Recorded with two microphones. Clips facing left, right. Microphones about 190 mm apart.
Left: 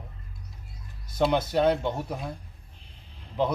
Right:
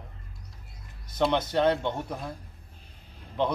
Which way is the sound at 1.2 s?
5° left (ahead or behind).